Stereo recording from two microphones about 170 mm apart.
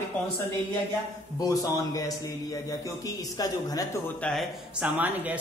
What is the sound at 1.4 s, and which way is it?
A man's voice, 20° left (ahead or behind).